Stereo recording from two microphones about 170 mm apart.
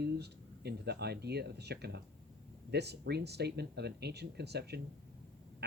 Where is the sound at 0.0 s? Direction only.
75° right (ahead or behind).